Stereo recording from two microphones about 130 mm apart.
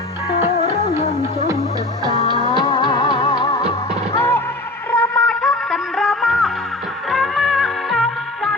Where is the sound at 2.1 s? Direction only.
45° left (ahead or behind).